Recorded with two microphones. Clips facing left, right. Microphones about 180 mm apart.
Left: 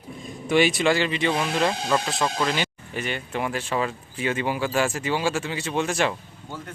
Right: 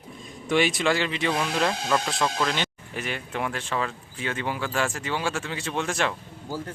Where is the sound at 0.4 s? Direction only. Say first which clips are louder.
Left 3 dB; centre (ahead or behind).